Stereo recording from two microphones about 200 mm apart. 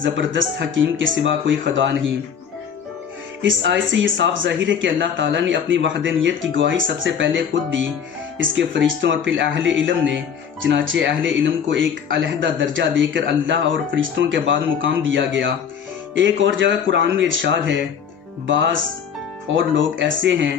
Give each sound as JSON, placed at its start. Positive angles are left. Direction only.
{"t": 0.0, "sound": "speech", "side_deg": -70}
{"t": 3.4, "sound": "speech", "side_deg": -70}